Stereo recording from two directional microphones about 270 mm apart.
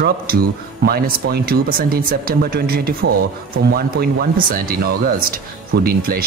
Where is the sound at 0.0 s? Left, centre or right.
Right.